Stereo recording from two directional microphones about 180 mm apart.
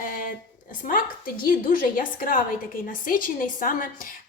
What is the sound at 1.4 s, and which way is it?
A woman's voice, 50° left (ahead or behind).